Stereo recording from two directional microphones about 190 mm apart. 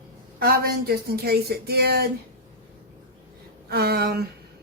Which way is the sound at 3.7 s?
55° right (ahead or behind).